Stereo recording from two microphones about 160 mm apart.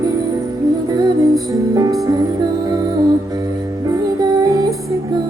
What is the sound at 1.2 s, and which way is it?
Music, 20° right (ahead or behind).